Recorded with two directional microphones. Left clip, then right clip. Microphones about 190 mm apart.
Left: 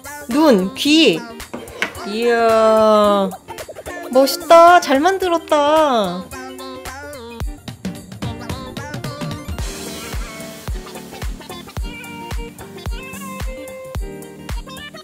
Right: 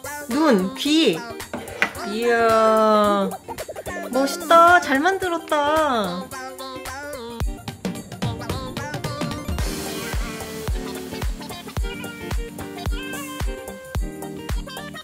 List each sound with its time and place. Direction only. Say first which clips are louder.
0.4 s speech: left 5 dB; 15° left (ahead or behind)